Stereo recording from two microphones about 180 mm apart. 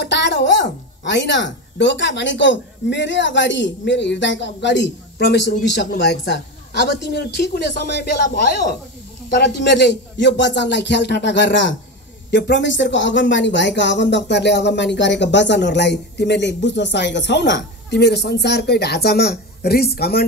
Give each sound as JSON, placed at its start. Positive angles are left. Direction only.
{"t": 0.1, "sound": "speech", "side_deg": 75}